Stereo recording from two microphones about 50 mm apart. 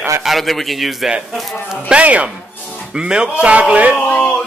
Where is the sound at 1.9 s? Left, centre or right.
Right.